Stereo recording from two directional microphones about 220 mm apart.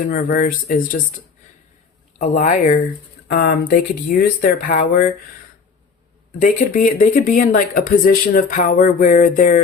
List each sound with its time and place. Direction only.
0.0 s speech: 40° left (ahead or behind)
2.1 s speech: 35° left (ahead or behind)
6.4 s speech: 35° left (ahead or behind)